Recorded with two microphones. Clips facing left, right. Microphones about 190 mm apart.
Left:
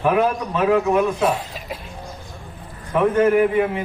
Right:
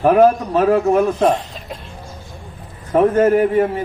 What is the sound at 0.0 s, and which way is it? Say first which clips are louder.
A man's voice: right 7 dB; 45° right (ahead or behind).